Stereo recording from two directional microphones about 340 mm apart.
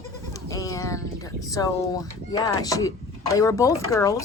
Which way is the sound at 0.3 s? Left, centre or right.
Centre.